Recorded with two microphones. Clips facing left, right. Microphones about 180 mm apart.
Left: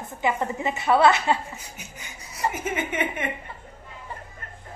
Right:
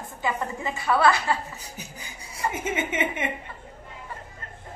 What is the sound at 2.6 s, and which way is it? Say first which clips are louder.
Speech: even; 25° right (ahead or behind).